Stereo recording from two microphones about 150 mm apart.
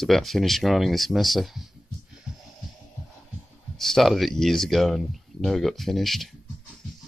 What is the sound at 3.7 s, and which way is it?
Speech, centre (ahead or behind).